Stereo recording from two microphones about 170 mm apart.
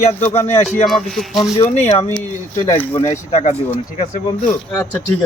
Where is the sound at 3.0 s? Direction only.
40° left (ahead or behind).